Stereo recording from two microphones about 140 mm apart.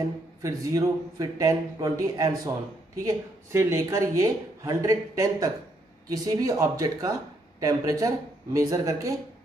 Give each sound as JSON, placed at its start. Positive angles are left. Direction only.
{"t": 0.4, "sound": "speech", "side_deg": -25}